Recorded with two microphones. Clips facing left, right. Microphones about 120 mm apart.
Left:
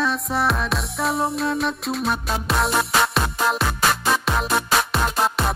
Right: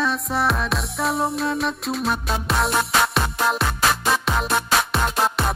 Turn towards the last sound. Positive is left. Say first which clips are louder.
# even
turn(degrees=0)  # may be behind; listen again after turning